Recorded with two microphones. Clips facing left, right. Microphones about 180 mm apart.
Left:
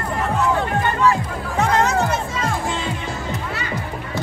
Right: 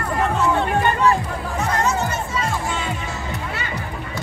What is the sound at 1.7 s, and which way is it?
Music, 90° left.